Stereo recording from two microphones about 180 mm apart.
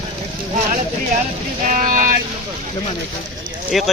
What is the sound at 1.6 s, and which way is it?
Vehicle, 45° right (ahead or behind).